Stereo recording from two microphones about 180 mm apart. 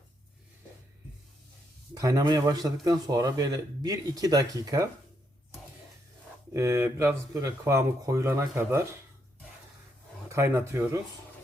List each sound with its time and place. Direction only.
2.0 s speech: 20° right (ahead or behind)
6.5 s speech: 15° right (ahead or behind)
10.2 s speech: 15° right (ahead or behind)